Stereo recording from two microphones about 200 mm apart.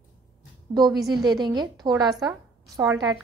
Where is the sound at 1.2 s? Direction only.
20° right (ahead or behind).